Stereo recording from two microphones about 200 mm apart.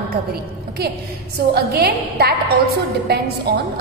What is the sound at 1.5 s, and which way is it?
A woman's voice, 50° right (ahead or behind).